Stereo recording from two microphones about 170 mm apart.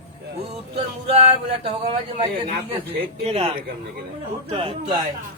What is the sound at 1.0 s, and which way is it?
A man's voice, 35° right (ahead or behind).